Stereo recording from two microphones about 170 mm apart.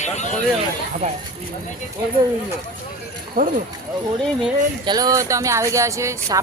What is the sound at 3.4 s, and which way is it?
Speech, 60° right (ahead or behind).